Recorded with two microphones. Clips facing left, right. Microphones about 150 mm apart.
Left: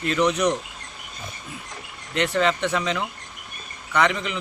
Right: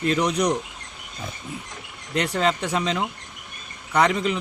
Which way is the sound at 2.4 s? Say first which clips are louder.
Even; 35° right (ahead or behind).